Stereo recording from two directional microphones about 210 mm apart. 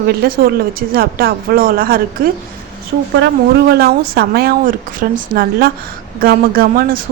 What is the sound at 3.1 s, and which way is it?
A woman's voice, 55° right (ahead or behind).